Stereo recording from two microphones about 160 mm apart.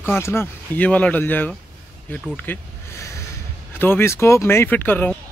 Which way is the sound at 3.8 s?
15° left (ahead or behind).